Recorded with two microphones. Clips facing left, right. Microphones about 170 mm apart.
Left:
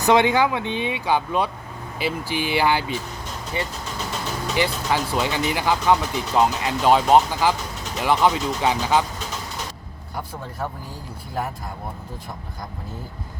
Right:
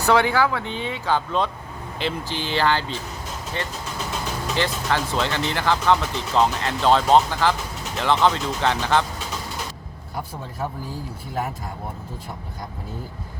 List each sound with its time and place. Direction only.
0.0 s speech: 20° left (ahead or behind)